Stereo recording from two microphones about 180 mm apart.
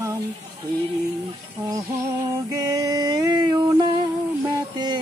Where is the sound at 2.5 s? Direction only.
20° right (ahead or behind).